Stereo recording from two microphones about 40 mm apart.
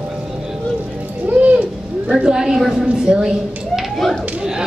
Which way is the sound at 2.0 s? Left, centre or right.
Centre.